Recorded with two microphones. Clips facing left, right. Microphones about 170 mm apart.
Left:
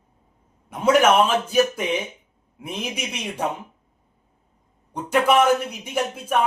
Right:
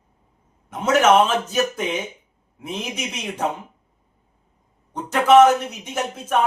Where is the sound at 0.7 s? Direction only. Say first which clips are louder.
Right 1 dB; 10° left (ahead or behind).